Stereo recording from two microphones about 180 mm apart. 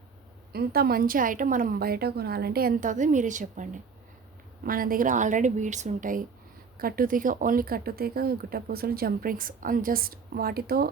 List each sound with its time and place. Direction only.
0.5 s a woman's voice: 60° right (ahead or behind)